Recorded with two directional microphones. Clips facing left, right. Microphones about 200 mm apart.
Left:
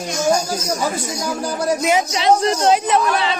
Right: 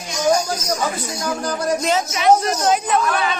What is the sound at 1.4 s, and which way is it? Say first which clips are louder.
Speech: left 2 dB; 5° left (ahead or behind).